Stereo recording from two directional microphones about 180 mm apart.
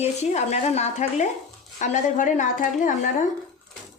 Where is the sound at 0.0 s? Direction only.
35° left (ahead or behind).